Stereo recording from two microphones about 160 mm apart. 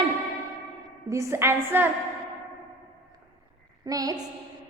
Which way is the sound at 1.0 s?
20° right (ahead or behind).